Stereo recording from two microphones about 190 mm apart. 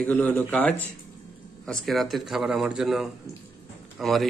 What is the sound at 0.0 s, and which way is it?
Speech, 10° left (ahead or behind).